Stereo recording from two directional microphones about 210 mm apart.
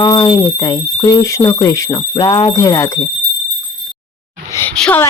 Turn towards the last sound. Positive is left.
turn(degrees=5)  # may be behind; listen again after turning